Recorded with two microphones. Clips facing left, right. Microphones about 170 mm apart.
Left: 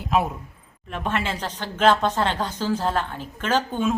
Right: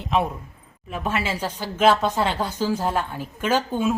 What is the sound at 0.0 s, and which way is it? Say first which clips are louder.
A man's voice: even; 5° left (ahead or behind).